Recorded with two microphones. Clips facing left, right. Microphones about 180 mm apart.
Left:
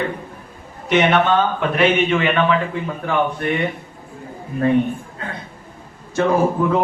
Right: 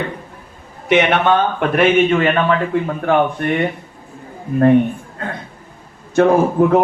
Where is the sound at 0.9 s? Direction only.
60° right (ahead or behind).